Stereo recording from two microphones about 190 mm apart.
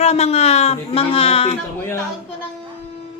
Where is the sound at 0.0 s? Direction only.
35° left (ahead or behind).